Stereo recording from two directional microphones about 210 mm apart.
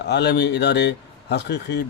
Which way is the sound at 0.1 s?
50° left (ahead or behind).